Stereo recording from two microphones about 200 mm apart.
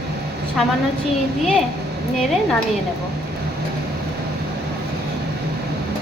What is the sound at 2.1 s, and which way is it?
Speech, centre (ahead or behind).